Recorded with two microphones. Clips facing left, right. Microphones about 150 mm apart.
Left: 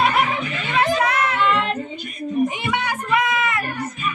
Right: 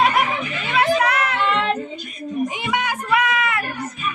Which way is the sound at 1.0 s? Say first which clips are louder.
Even; 65° right (ahead or behind).